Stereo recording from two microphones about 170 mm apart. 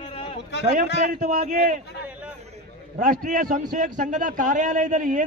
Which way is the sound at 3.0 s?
55° right (ahead or behind).